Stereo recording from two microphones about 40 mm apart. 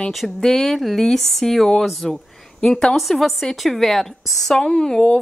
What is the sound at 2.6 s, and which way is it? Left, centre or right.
Speech, left.